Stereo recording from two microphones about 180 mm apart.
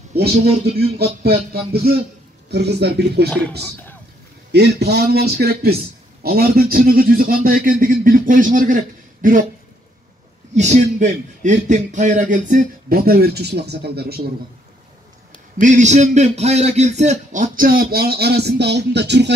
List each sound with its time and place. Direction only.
0.1 s a man's voice: 60° right (ahead or behind)
3.3 s speech: 5° left (ahead or behind)
4.5 s a man's voice: 70° right (ahead or behind); by 9.4 s 45° right (ahead or behind)
10.5 s a man's voice: 40° right (ahead or behind); by 14.2 s 60° right (ahead or behind)
15.6 s a man's voice: 40° right (ahead or behind); by 19.3 s 70° right (ahead or behind)